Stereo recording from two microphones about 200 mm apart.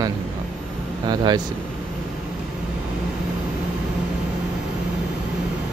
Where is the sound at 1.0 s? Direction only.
20° right (ahead or behind).